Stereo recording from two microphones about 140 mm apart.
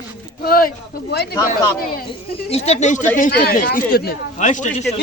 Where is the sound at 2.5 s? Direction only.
50° left (ahead or behind).